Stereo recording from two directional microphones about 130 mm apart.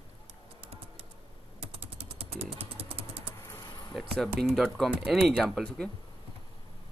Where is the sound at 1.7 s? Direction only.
50° right (ahead or behind).